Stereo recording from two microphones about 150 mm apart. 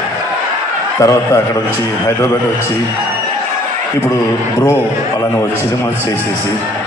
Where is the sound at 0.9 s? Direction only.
20° left (ahead or behind).